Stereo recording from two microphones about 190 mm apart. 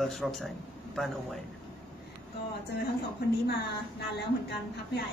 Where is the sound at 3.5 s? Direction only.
60° left (ahead or behind).